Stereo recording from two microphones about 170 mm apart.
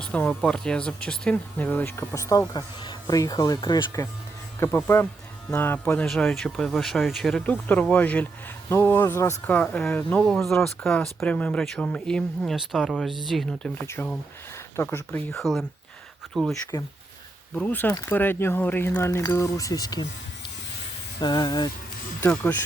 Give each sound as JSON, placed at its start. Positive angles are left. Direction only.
{"t": 0.0, "sound": "speech", "side_deg": 10}
{"t": 13.8, "sound": "speech", "side_deg": 15}
{"t": 15.4, "sound": "speech", "side_deg": 0}
{"t": 21.2, "sound": "speech", "side_deg": 25}
{"t": 22.2, "sound": "speech", "side_deg": 10}